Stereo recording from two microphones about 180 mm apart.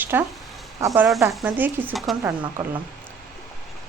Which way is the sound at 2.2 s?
15° right (ahead or behind).